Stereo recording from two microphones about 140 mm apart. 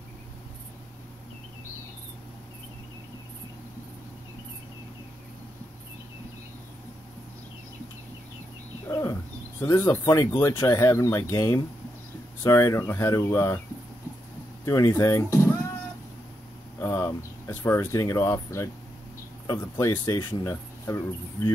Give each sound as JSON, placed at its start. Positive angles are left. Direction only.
{"t": 8.8, "sound": "wild animals", "side_deg": 20}
{"t": 9.6, "sound": "speech", "side_deg": 15}
{"t": 14.6, "sound": "speech", "side_deg": 20}
{"t": 16.8, "sound": "speech", "side_deg": 20}